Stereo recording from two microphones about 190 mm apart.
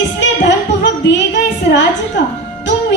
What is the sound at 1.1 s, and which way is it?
Speech, 65° left (ahead or behind).